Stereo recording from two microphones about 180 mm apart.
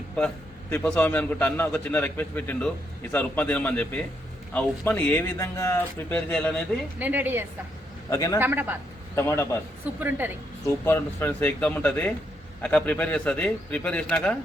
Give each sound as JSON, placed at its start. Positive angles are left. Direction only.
{"t": 0.7, "sound": "a man's voice", "side_deg": 10}
{"t": 7.0, "sound": "a man's voice", "side_deg": -10}
{"t": 8.1, "sound": "a man's voice", "side_deg": 15}
{"t": 8.4, "sound": "a man's voice", "side_deg": -10}
{"t": 9.1, "sound": "a man's voice", "side_deg": 15}
{"t": 10.0, "sound": "a man's voice", "side_deg": -10}
{"t": 10.8, "sound": "a man's voice", "side_deg": 10}